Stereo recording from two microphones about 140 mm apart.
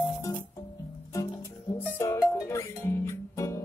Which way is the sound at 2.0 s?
20° left (ahead or behind).